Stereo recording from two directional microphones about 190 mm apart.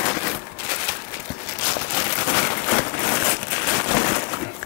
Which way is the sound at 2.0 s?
20° left (ahead or behind).